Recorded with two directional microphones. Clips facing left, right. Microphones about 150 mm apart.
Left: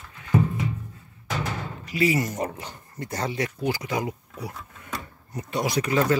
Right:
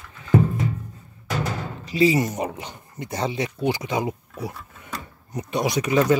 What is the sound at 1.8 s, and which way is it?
Speech, 25° right (ahead or behind).